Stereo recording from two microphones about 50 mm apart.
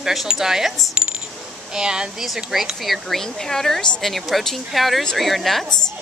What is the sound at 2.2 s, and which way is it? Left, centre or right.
Speech, centre.